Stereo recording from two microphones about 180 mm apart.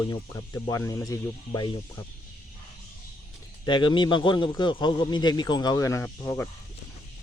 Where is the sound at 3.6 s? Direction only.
25° left (ahead or behind).